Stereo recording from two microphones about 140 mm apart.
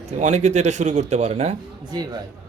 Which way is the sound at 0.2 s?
55° right (ahead or behind).